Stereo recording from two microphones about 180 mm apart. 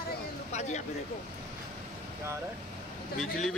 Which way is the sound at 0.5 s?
40° left (ahead or behind).